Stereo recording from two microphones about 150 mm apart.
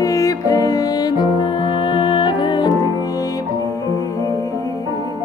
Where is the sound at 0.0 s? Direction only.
20° left (ahead or behind).